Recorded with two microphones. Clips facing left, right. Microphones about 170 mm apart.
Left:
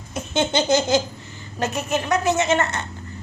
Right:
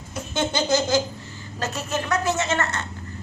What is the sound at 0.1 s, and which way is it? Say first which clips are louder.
A woman's voice: left 4 dB; 20° left (ahead or behind).